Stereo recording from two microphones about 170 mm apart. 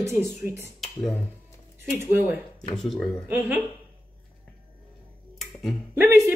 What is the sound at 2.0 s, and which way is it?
Speech, 10° right (ahead or behind).